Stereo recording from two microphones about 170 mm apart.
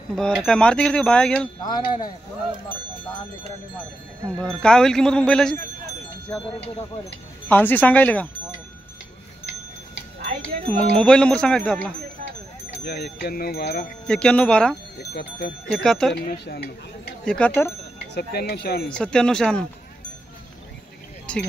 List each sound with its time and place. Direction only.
0.1 s speech: centre (ahead or behind)
1.6 s speech: 25° left (ahead or behind)
4.4 s speech: 5° left (ahead or behind)
7.4 s speech: 10° left (ahead or behind)
10.7 s speech: 5° left (ahead or behind)
12.8 s speech: 70° left (ahead or behind)
14.0 s speech: 5° left (ahead or behind)
15.1 s speech: 75° left (ahead or behind)
15.7 s speech: 5° left (ahead or behind)
16.3 s speech: 65° left (ahead or behind)
17.2 s speech: 5° left (ahead or behind)
18.1 s speech: 75° left (ahead or behind)
18.9 s speech: 5° left (ahead or behind)
21.3 s speech: 5° left (ahead or behind)